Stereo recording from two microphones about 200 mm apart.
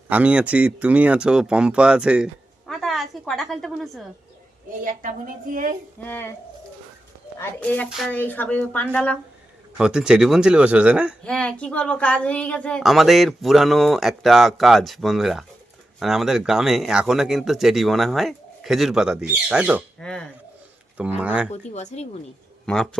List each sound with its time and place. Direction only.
0.1 s a woman's voice: 5° right (ahead or behind)
4.7 s a woman's voice: 40° right (ahead or behind)
6.0 s speech: 10° left (ahead or behind)
7.3 s a woman's voice: 10° left (ahead or behind)
20.0 s a woman's voice: 5° left (ahead or behind)
21.2 s speech: 5° right (ahead or behind)
21.5 s speech: 35° left (ahead or behind)
22.6 s speech: 5° left (ahead or behind)